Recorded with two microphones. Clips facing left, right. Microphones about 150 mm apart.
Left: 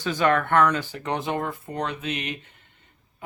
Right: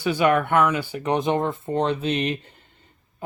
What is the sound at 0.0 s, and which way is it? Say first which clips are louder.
Speech: right 2 dB; 10° right (ahead or behind).